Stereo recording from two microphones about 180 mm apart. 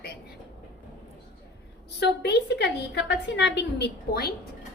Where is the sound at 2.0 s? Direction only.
70° left (ahead or behind).